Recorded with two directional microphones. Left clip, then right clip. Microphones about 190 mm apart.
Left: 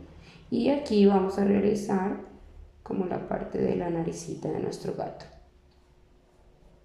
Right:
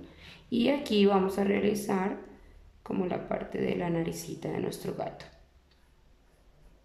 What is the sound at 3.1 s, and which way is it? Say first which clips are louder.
A woman's voice: left 2 dB; 10° right (ahead or behind).